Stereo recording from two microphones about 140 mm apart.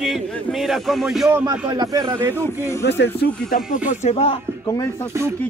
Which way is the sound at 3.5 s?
75° left (ahead or behind).